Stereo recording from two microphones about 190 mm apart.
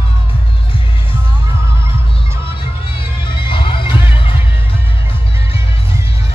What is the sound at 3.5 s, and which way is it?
Music, 25° left (ahead or behind).